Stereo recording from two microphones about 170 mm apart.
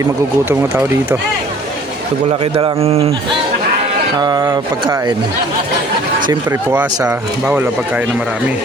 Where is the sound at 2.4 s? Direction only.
30° right (ahead or behind).